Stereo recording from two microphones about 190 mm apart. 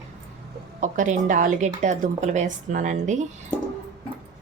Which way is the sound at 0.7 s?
40° right (ahead or behind).